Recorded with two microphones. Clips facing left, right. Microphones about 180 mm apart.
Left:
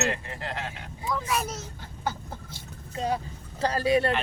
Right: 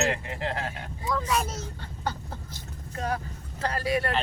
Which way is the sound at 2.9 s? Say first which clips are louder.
Left 2 dB; 20° left (ahead or behind).